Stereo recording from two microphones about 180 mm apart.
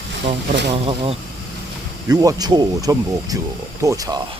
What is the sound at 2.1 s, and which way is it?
Speech, 20° right (ahead or behind).